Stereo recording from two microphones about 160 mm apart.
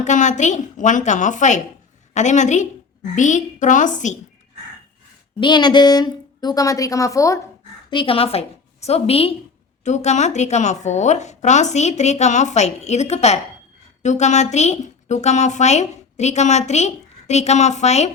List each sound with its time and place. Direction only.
0.0 s a woman's voice: 50° left (ahead or behind)
5.4 s a woman's voice: 30° left (ahead or behind)
7.9 s a woman's voice: 35° left (ahead or behind)